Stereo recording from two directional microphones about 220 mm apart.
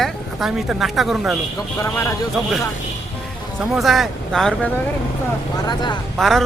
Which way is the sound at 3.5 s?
Centre (ahead or behind).